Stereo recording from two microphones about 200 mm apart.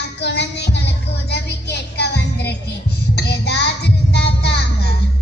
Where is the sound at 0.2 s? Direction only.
60° left (ahead or behind).